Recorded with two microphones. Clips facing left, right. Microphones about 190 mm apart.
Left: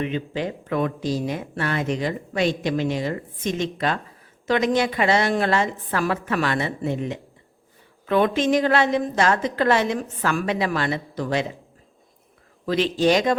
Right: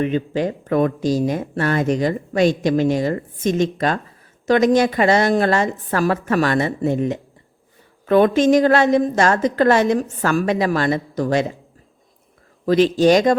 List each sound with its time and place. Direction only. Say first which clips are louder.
0.0 s speech: right 6 dB; 45° right (ahead or behind)
12.6 s speech: right 6 dB; 45° right (ahead or behind)